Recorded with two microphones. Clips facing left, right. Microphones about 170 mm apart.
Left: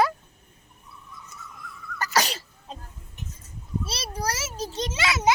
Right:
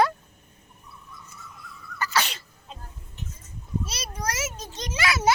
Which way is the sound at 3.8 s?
30° left (ahead or behind).